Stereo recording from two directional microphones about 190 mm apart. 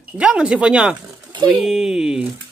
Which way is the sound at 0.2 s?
5° right (ahead or behind).